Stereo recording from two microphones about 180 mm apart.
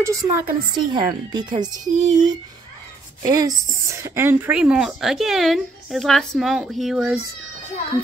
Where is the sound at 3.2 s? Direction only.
20° right (ahead or behind); by 7.1 s centre (ahead or behind).